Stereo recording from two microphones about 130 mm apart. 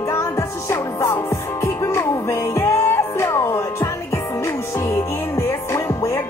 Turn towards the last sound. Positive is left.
turn(degrees=20)  # may be behind; listen again after turning